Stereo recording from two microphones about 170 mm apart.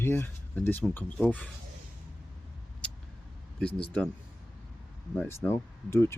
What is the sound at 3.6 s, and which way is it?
Speech, 5° left (ahead or behind).